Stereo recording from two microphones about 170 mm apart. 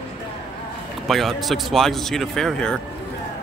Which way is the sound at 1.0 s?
Centre (ahead or behind).